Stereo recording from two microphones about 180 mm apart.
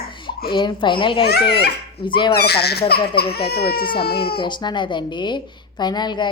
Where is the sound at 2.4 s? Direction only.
65° left (ahead or behind).